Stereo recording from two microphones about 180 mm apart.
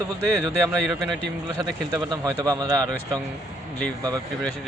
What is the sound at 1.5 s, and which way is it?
Speech, 20° right (ahead or behind).